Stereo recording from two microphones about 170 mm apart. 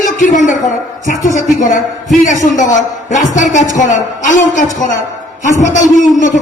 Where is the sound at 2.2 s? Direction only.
45° left (ahead or behind).